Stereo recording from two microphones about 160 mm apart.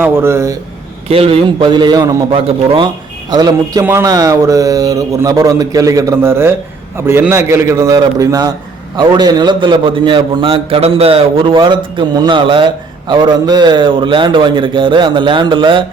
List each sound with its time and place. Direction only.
0.0 s a man's voice: 15° right (ahead or behind)
1.0 s a man's voice: 35° right (ahead or behind)